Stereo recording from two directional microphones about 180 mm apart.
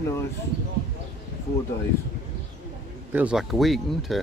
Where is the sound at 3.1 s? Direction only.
5° right (ahead or behind).